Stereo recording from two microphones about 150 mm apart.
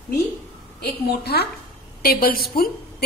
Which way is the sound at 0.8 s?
90° left.